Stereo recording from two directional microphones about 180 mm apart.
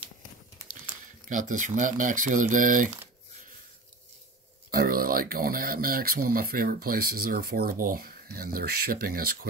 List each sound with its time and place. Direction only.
1.3 s speech: 45° right (ahead or behind)
4.6 s speech: 55° right (ahead or behind)